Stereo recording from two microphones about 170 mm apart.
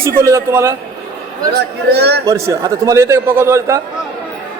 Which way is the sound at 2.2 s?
20° right (ahead or behind).